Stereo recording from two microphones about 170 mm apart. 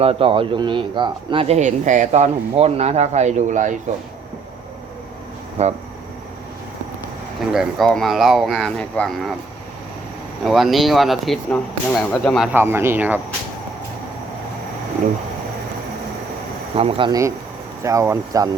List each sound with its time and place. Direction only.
0.0 s speech: 35° right (ahead or behind)
5.6 s speech: 40° right (ahead or behind)
7.5 s speech: centre (ahead or behind)
10.4 s speech: centre (ahead or behind)
12.5 s speech: 15° right (ahead or behind)
16.7 s speech: 30° right (ahead or behind)
17.8 s speech: 15° right (ahead or behind)